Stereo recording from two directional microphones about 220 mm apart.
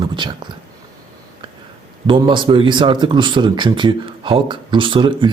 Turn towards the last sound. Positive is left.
turn(degrees=-20)  # may be behind; listen again after turning